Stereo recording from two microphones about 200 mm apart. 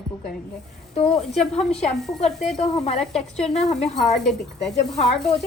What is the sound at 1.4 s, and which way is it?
A woman's voice, centre (ahead or behind).